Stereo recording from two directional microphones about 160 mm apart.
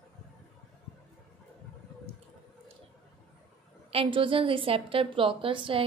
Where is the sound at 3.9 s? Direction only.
35° right (ahead or behind).